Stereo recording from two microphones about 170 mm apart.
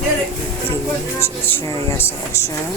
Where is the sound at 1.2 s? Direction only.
15° left (ahead or behind).